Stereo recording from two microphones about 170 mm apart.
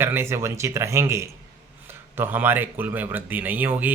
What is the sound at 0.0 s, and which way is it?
A man's voice, 15° right (ahead or behind).